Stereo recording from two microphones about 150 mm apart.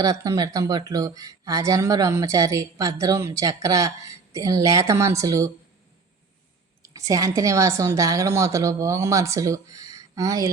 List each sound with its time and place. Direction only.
0.0 s speech: 25° right (ahead or behind)
6.8 s speech: 20° right (ahead or behind)